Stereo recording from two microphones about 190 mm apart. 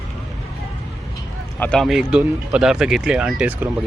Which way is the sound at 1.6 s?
5° left (ahead or behind).